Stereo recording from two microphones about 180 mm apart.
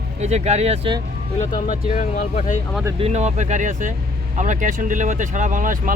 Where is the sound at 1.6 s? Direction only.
45° left (ahead or behind).